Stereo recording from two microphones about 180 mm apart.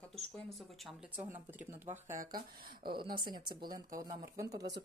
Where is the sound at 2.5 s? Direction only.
55° right (ahead or behind).